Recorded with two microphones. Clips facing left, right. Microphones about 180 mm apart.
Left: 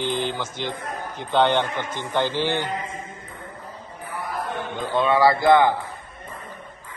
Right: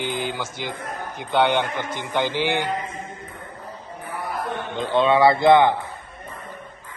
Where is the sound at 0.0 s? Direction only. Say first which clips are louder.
Left 1 dB; 10° right (ahead or behind).